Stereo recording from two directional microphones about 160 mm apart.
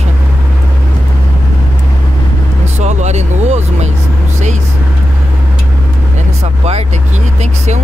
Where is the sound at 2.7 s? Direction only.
45° right (ahead or behind).